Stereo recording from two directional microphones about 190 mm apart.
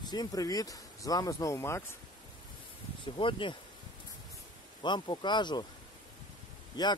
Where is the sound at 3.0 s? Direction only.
25° left (ahead or behind).